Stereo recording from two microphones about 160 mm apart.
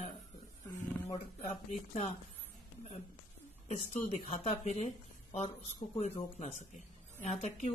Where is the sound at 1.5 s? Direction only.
45° left (ahead or behind).